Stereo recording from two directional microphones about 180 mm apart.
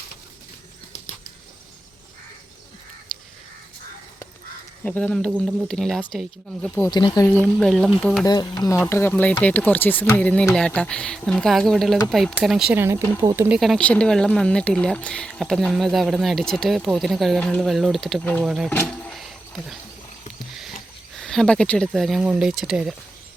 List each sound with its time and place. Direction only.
4.8 s speech: 10° left (ahead or behind)
6.8 s speech: 20° left (ahead or behind)
7.3 s speech: 10° left (ahead or behind)
8.2 s speech: 20° left (ahead or behind); by 13.6 s 15° right (ahead or behind)
13.6 s speech: 5° left (ahead or behind)
18.7 s wild animals: 10° left (ahead or behind)
21.2 s speech: 5° left (ahead or behind)